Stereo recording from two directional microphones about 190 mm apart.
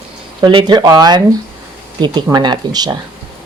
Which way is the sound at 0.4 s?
25° right (ahead or behind).